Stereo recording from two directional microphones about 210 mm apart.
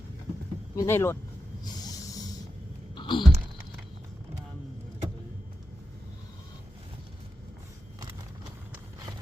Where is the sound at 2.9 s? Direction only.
20° left (ahead or behind).